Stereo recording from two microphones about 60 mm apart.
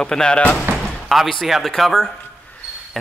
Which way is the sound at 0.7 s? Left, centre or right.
Right.